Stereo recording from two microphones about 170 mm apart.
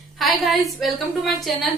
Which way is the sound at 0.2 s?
Centre (ahead or behind).